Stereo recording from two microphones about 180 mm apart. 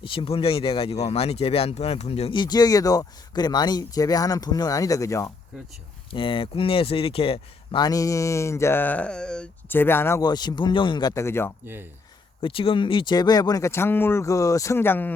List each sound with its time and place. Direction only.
0.0 s speech: 30° left (ahead or behind)
6.1 s speech: 25° left (ahead or behind)
11.6 s speech: 10° right (ahead or behind)
12.4 s speech: 30° left (ahead or behind); by 15.1 s 10° left (ahead or behind)